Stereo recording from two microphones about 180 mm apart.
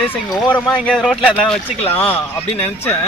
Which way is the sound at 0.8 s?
Centre (ahead or behind).